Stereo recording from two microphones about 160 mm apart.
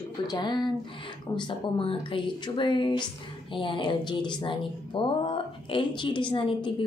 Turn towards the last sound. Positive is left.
turn(degrees=30)  # may be behind; listen again after turning